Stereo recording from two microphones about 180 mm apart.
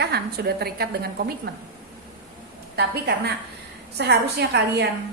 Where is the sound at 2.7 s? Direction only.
65° right (ahead or behind).